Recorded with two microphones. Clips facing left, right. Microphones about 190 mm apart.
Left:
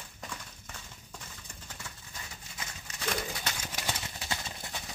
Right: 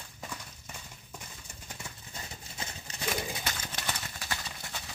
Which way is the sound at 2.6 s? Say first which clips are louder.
Right 3 dB; 30° right (ahead or behind).